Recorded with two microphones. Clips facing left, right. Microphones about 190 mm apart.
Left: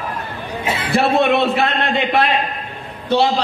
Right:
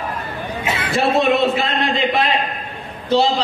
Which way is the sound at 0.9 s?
65° left (ahead or behind).